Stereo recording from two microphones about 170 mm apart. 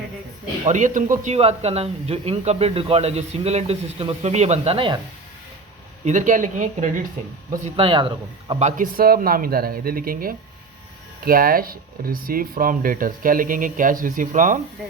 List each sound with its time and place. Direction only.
0.6 s speech: 45° right (ahead or behind)
6.1 s speech: 45° right (ahead or behind)
7.8 s speech: 30° right (ahead or behind)
8.6 s speech: 55° right (ahead or behind)